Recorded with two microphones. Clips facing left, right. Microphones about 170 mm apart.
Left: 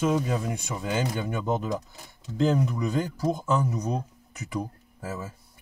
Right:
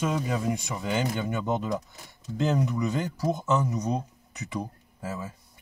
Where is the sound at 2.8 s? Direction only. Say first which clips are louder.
Left 1 dB; 10° left (ahead or behind).